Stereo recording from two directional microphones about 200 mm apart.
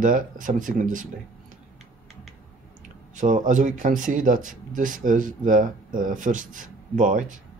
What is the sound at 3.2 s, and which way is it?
Speech, 40° right (ahead or behind).